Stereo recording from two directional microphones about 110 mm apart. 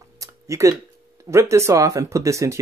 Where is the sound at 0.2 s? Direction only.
30° right (ahead or behind).